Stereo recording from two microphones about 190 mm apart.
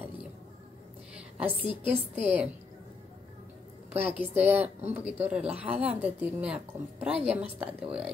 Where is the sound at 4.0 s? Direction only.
10° right (ahead or behind).